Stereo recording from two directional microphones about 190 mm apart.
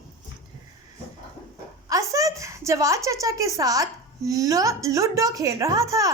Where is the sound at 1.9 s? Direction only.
15° right (ahead or behind).